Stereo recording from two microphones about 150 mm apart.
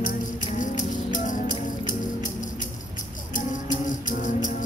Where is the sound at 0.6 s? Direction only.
60° left (ahead or behind).